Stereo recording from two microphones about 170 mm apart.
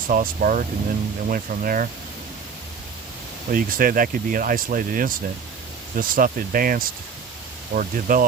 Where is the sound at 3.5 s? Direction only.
55° right (ahead or behind).